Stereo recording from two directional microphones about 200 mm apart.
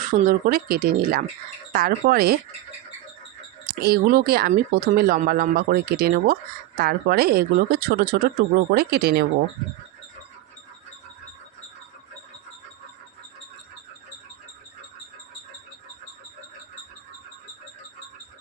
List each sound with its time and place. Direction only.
0.1 s speech: 45° right (ahead or behind)
3.7 s speech: 50° right (ahead or behind)